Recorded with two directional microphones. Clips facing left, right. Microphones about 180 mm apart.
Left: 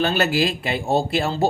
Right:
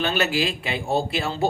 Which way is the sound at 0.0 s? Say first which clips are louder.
Left 3 dB; 40° left (ahead or behind).